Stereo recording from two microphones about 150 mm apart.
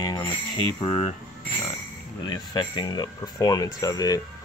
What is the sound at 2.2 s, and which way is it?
Speech, 30° left (ahead or behind).